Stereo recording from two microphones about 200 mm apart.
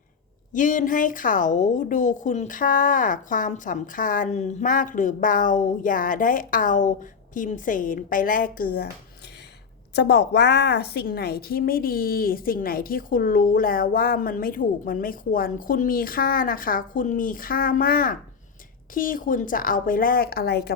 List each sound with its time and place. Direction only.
0.5 s a woman's voice: 40° left (ahead or behind)
9.9 s a woman's voice: 60° left (ahead or behind)